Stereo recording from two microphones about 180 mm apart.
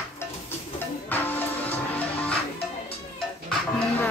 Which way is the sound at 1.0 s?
10° left (ahead or behind).